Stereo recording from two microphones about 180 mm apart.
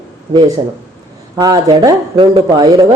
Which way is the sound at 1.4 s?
20° right (ahead or behind).